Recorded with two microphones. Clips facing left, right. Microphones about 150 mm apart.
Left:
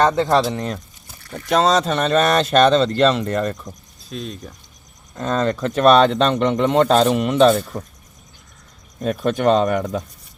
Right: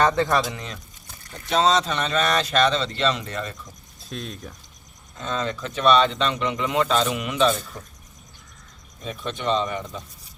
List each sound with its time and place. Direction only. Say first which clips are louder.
0.0 s speech: left 4 dB; 20° left (ahead or behind)
0.5 s speech: left 10 dB; 45° left (ahead or behind)
4.1 s speech: left 4 dB; centre (ahead or behind)
5.1 s speech: left 7 dB; 50° left (ahead or behind)
9.1 s speech: left 8 dB; 50° left (ahead or behind)